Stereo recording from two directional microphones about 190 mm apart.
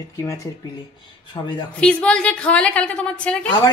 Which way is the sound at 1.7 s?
5° left (ahead or behind).